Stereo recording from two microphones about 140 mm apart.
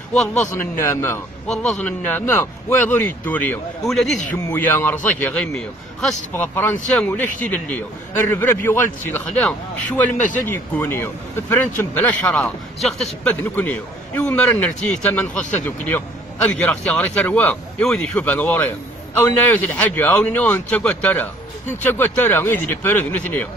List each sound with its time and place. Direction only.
0.1 s a man's voice: 5° left (ahead or behind)
0.5 s a man's voice: 20° left (ahead or behind)
3.8 s a man's voice: centre (ahead or behind)
4.3 s a man's voice: 15° left (ahead or behind)
12.4 s a man's voice: 5° left (ahead or behind)